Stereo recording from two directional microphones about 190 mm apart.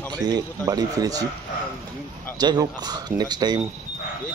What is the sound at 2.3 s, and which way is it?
Speech, 20° right (ahead or behind).